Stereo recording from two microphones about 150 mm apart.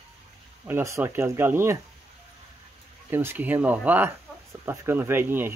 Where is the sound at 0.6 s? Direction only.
15° right (ahead or behind).